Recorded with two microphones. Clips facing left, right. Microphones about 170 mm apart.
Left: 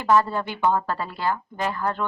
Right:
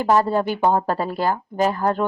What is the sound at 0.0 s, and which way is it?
Speech, 35° right (ahead or behind).